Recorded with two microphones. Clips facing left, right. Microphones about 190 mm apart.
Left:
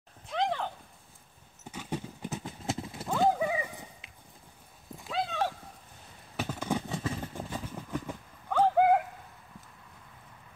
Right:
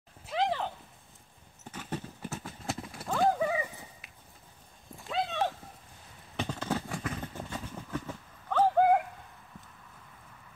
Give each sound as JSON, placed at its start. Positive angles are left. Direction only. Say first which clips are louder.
{"t": 0.3, "sound": "a sound", "louder": "right 1 dB", "side_deg": -5}
{"t": 1.7, "sound": "clip-clop", "louder": "left 2 dB", "side_deg": 10}
{"t": 3.3, "sound": "horse", "louder": "even", "side_deg": 15}
{"t": 5.0, "sound": "dog", "louder": "even", "side_deg": 0}
{"t": 6.3, "sound": "a sound", "louder": "left 1 dB", "side_deg": 5}
{"t": 6.9, "sound": "vehicle", "louder": "left 2 dB", "side_deg": 25}
{"t": 7.2, "sound": "horse", "louder": "left 1 dB", "side_deg": 10}